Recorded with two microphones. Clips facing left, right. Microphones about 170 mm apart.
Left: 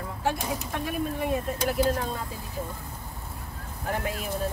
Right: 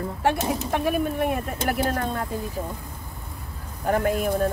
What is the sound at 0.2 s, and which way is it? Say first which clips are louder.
Speech: right 5 dB; 75° right (ahead or behind).